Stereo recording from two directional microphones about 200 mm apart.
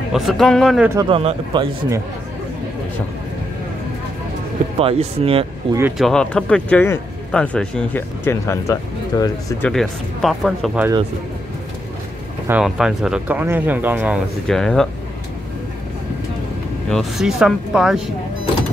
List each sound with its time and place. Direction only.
0.1 s speech: centre (ahead or behind)
1.0 s a man's voice: 25° right (ahead or behind)
4.7 s a man's voice: 30° right (ahead or behind)
5.8 s speech: 10° right (ahead or behind)
6.0 s speech: 5° left (ahead or behind)
9.7 s speech: centre (ahead or behind)
12.4 s speech: 5° right (ahead or behind)
16.9 s speech: centre (ahead or behind)